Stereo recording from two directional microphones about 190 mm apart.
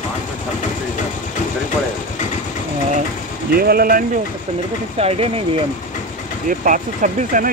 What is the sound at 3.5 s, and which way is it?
Speech, 55° right (ahead or behind).